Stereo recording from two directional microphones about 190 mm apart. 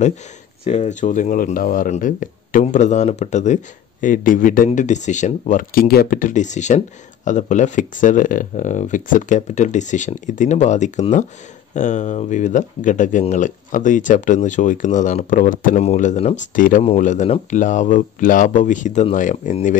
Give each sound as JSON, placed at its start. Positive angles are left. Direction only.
{"t": 0.7, "sound": "speech", "side_deg": 40}